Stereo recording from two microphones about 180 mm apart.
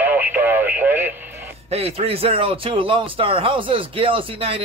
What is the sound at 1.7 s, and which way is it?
A man's voice, 35° right (ahead or behind).